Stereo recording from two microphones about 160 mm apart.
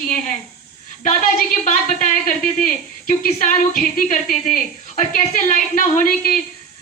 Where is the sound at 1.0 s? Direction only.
50° left (ahead or behind).